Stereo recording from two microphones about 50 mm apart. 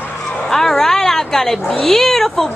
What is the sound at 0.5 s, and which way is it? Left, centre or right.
A woman's voice, centre.